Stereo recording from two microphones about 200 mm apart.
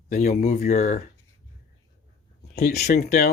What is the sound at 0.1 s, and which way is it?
Speech, 40° left (ahead or behind).